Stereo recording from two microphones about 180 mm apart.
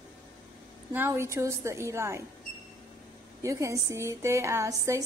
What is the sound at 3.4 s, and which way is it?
A woman's voice, 15° right (ahead or behind).